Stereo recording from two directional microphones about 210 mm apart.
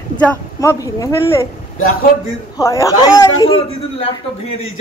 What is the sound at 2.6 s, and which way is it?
Speech, 15° left (ahead or behind).